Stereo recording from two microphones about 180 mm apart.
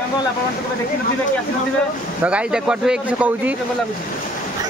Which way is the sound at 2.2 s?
5° right (ahead or behind).